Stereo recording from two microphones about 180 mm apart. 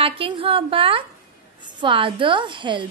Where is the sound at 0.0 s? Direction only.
30° right (ahead or behind).